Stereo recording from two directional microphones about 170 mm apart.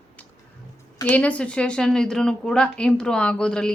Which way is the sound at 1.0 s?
10° left (ahead or behind).